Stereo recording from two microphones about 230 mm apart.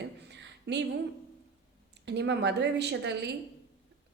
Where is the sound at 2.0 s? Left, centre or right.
Right.